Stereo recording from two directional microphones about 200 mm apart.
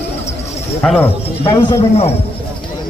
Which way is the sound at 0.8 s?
10° left (ahead or behind).